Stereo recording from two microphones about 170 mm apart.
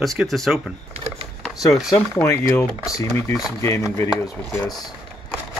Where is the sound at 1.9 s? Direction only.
15° left (ahead or behind).